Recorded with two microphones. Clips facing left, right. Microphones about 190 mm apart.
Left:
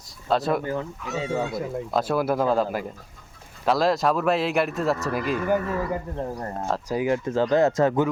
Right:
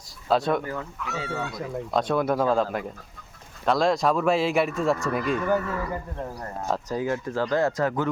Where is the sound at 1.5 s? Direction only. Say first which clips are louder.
Left 2 dB; 5° left (ahead or behind).